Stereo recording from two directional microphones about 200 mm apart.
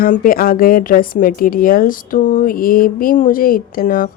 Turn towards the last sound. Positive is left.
turn(degrees=45)  # may be behind; listen again after turning